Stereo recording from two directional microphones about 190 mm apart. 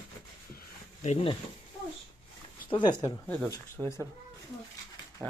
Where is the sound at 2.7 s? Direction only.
20° left (ahead or behind).